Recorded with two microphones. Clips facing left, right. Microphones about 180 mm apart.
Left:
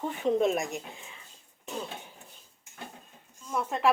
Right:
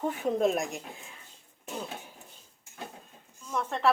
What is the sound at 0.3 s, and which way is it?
Speech, centre (ahead or behind).